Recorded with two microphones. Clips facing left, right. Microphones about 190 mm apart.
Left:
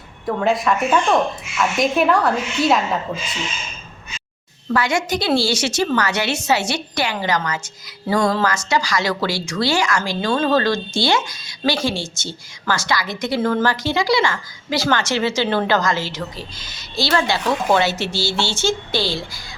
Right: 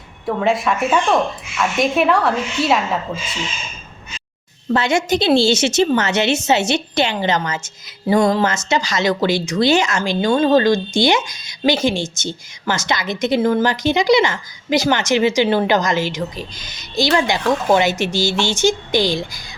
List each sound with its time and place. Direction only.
0.3 s a woman's voice: centre (ahead or behind)
4.7 s a woman's voice: 25° right (ahead or behind)